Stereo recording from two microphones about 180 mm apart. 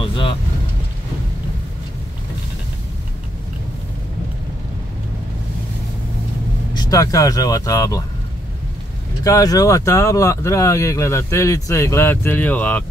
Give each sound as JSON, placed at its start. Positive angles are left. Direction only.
{"t": 0.0, "sound": "vehicle", "side_deg": 30}
{"t": 6.7, "sound": "speech", "side_deg": 20}
{"t": 9.2, "sound": "speech", "side_deg": 20}